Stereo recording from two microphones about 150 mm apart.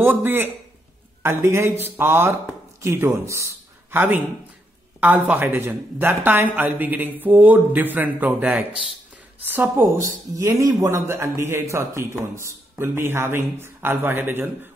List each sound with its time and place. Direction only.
0.0 s a man's voice: 15° right (ahead or behind)